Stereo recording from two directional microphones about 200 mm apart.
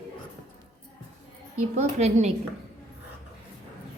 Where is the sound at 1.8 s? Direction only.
35° right (ahead or behind).